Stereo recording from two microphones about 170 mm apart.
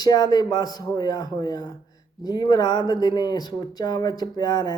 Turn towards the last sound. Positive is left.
turn(degrees=25)  # may be behind; listen again after turning